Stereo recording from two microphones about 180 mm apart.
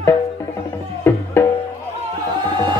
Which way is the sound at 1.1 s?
15° left (ahead or behind).